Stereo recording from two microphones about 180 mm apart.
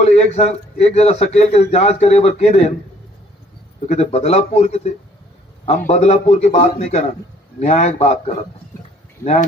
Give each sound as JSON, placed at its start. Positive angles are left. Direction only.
{"t": 0.0, "sound": "a man's voice", "side_deg": 35}
{"t": 3.9, "sound": "a man's voice", "side_deg": 35}